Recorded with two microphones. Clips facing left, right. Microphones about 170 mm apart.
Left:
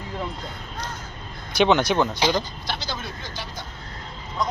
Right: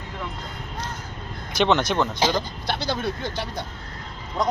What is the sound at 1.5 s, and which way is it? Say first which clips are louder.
Speech: left 2 dB; centre (ahead or behind).